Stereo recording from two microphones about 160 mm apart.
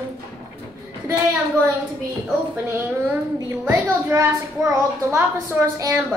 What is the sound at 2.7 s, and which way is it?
A child's voice, 10° right (ahead or behind).